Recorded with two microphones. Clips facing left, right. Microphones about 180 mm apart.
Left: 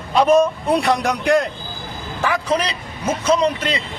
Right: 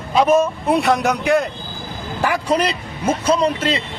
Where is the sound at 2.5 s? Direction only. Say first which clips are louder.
Right 2 dB; 10° right (ahead or behind).